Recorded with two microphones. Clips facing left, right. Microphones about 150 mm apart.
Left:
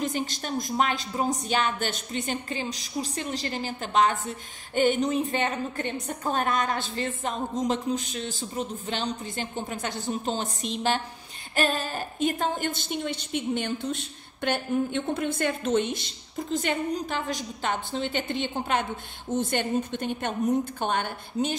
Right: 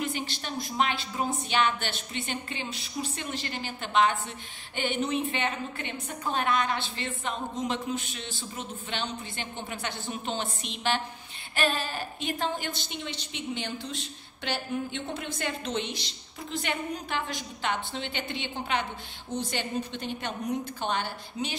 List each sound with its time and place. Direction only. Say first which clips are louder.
0.0 s a woman's voice: left 3 dB; 40° left (ahead or behind)